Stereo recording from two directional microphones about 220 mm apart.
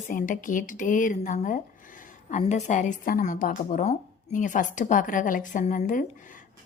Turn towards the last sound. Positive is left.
turn(degrees=35)  # may be behind; listen again after turning